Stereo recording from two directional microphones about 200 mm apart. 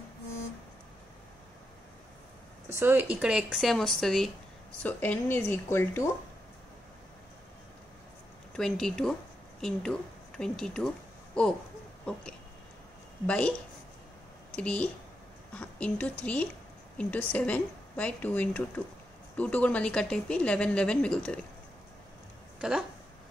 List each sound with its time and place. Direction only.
2.7 s a woman's voice: 10° right (ahead or behind); by 6.0 s 10° left (ahead or behind)
8.5 s a woman's voice: 5° left (ahead or behind)
12.1 s a woman's voice: 5° left (ahead or behind)
22.6 s speech: 5° right (ahead or behind)